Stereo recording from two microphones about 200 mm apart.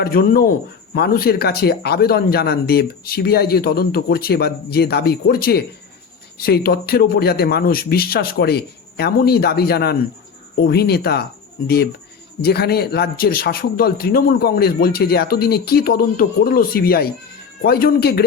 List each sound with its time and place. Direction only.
0.0 s speech: 50° left (ahead or behind)
12.4 s speech: 50° left (ahead or behind)